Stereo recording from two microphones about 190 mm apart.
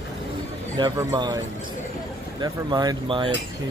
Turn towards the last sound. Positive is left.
turn(degrees=-25)  # may be behind; listen again after turning